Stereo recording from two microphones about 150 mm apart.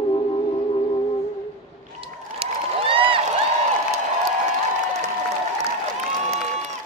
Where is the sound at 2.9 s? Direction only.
35° right (ahead or behind).